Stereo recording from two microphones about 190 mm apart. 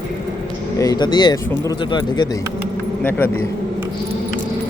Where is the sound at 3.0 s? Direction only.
10° left (ahead or behind).